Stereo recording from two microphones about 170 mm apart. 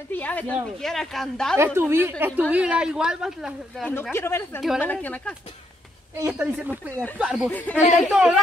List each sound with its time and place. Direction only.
0.1 s a woman's voice: 10° left (ahead or behind)
1.8 s a woman's voice: 15° right (ahead or behind)
3.8 s speech: 10° left (ahead or behind)
4.6 s a woman's voice: centre (ahead or behind)
4.8 s speech: 10° left (ahead or behind)
6.1 s speech: 20° right (ahead or behind)
6.4 s a woman's voice: 10° right (ahead or behind)
7.4 s speech: 10° left (ahead or behind)
7.7 s a woman's voice: centre (ahead or behind)